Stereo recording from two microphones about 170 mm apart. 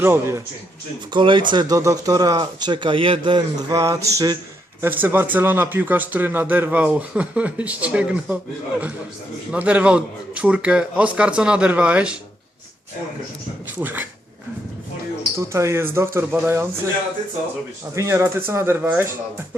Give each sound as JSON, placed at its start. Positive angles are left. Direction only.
{"t": 0.0, "sound": "speech", "side_deg": -15}
{"t": 1.1, "sound": "speech", "side_deg": -30}
{"t": 9.5, "sound": "speech", "side_deg": -10}
{"t": 13.7, "sound": "speech", "side_deg": -10}
{"t": 15.4, "sound": "speech", "side_deg": -15}
{"t": 17.9, "sound": "speech", "side_deg": -15}